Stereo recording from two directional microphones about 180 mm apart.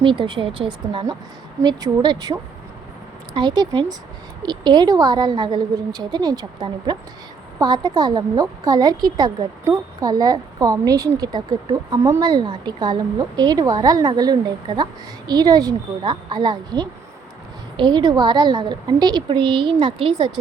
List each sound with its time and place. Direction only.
0.0 s a woman's voice: 25° right (ahead or behind)